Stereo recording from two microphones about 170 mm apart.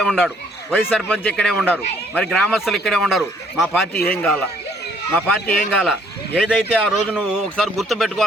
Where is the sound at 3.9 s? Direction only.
65° left (ahead or behind).